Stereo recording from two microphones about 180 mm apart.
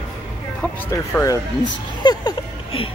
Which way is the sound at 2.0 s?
20° left (ahead or behind).